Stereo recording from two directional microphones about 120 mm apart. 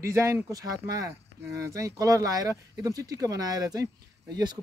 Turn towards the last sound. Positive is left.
turn(degrees=-35)  # may be behind; listen again after turning